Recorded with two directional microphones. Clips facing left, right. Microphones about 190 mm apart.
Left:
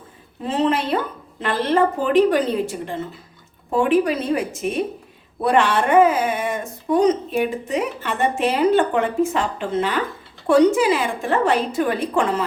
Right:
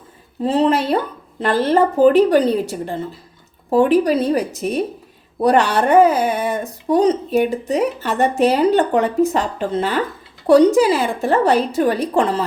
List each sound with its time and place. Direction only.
0.4 s speech: 35° right (ahead or behind)